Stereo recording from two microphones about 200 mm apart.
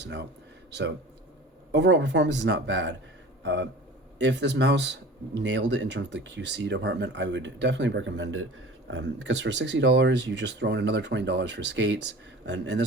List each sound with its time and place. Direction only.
0.0 s a man's voice: 60° right (ahead or behind)